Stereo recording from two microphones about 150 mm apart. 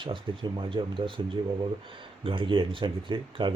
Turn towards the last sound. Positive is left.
turn(degrees=-35)  # may be behind; listen again after turning